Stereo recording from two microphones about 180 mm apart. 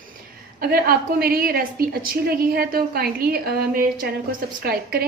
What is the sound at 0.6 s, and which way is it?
A woman's voice, 55° right (ahead or behind).